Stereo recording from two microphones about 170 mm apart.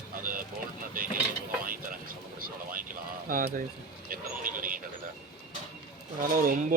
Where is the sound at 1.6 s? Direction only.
55° right (ahead or behind).